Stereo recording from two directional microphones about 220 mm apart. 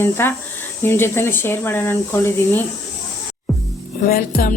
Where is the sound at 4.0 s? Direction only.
40° left (ahead or behind).